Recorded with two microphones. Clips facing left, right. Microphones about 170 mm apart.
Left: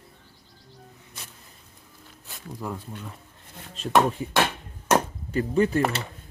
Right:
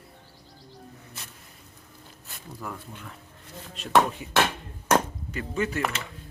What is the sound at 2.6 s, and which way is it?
Speech, 20° left (ahead or behind).